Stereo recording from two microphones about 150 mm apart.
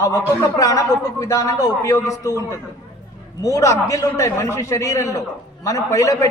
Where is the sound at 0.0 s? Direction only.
20° left (ahead or behind).